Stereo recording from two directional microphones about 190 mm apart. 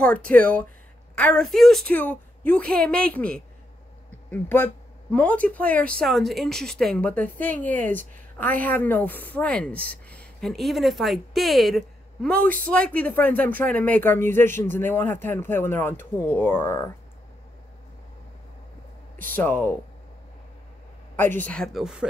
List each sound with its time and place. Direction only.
0.3 s a woman's voice: 5° left (ahead or behind)
19.3 s speech: 10° left (ahead or behind)
21.2 s a woman's voice: 10° left (ahead or behind)